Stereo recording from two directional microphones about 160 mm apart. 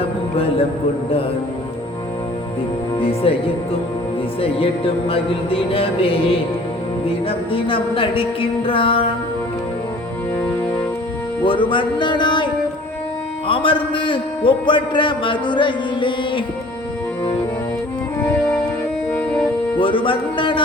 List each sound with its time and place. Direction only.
3.0 s a man's voice: 35° left (ahead or behind)
10.3 s music: 10° left (ahead or behind)
11.4 s speech: 30° left (ahead or behind)
13.5 s a man's voice: 35° left (ahead or behind)
19.8 s a man's voice: 35° left (ahead or behind)